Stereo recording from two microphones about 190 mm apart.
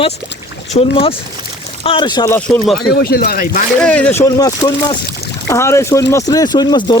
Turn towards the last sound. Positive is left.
turn(degrees=20)  # may be behind; listen again after turning